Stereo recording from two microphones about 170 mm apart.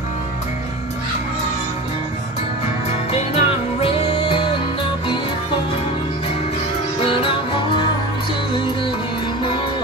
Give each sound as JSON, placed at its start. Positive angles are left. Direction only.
{"t": 2.9, "sound": "music", "side_deg": 35}
{"t": 7.1, "sound": "music", "side_deg": 30}